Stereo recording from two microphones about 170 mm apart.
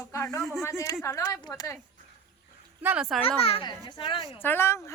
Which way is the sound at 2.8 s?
5° right (ahead or behind).